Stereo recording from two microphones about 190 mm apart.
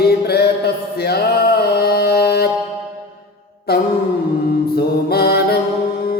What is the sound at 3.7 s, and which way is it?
Music, 55° left (ahead or behind).